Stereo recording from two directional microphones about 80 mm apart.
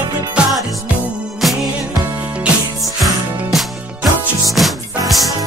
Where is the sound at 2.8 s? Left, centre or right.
Centre.